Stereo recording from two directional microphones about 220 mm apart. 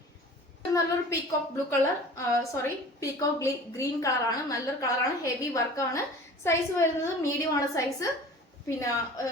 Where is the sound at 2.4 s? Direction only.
15° left (ahead or behind).